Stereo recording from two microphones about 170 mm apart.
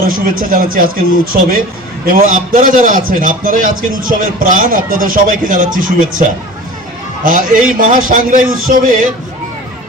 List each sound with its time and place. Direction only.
0.1 s a man's voice: 55° right (ahead or behind)
7.3 s a man's voice: 55° right (ahead or behind)